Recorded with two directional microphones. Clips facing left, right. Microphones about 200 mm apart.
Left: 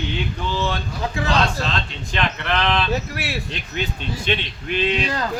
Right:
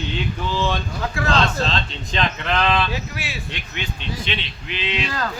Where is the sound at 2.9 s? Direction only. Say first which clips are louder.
Left 4 dB; 60° left (ahead or behind).